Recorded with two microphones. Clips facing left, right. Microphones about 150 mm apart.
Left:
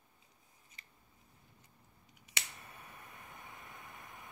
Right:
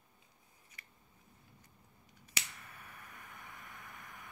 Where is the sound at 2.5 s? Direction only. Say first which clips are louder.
Left 1 dB; 25° left (ahead or behind).